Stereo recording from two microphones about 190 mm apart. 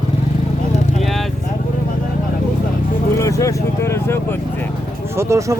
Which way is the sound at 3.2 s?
15° left (ahead or behind).